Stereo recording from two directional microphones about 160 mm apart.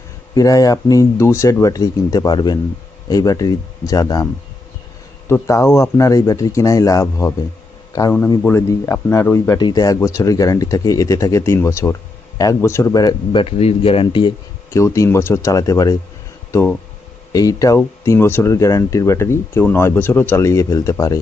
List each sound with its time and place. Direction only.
0.3 s speech: 20° left (ahead or behind)
5.3 s speech: 20° left (ahead or behind)
14.7 s speech: 20° left (ahead or behind)